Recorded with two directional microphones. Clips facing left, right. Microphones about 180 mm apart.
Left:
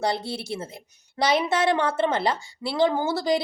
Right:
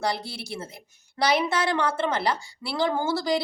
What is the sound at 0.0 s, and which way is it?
Speech, 25° left (ahead or behind).